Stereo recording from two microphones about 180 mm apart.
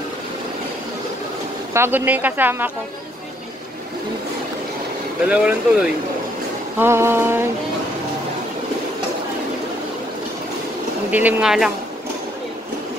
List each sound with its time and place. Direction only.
1.7 s speech: 10° right (ahead or behind)
5.3 s speech: 5° right (ahead or behind)
11.1 s speech: 10° right (ahead or behind)